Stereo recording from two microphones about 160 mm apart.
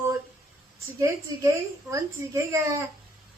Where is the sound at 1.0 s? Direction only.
20° right (ahead or behind).